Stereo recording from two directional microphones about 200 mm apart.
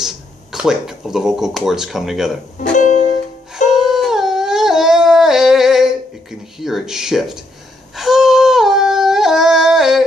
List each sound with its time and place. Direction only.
0.0 s speech: centre (ahead or behind)
2.7 s music: 35° left (ahead or behind)
3.6 s a sound: centre (ahead or behind)
6.6 s speech: centre (ahead or behind)
7.9 s yodeling: centre (ahead or behind)